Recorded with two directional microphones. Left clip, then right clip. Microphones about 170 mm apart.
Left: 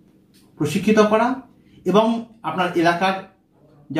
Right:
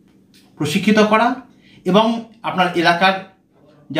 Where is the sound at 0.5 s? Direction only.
20° right (ahead or behind).